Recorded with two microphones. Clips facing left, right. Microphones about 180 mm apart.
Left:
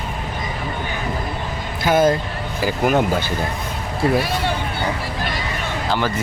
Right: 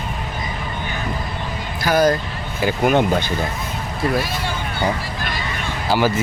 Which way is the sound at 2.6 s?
Centre (ahead or behind).